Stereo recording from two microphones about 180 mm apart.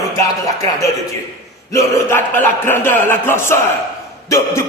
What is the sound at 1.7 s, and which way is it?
A man's voice, 15° left (ahead or behind).